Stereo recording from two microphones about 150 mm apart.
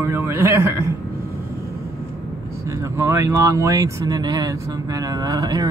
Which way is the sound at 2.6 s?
20° right (ahead or behind).